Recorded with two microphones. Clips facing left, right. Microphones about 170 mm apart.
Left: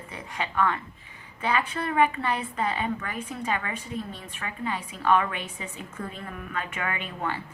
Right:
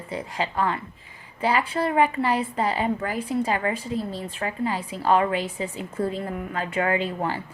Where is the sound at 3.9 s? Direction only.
90° right.